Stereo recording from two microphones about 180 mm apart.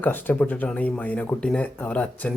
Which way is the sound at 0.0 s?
10° left (ahead or behind).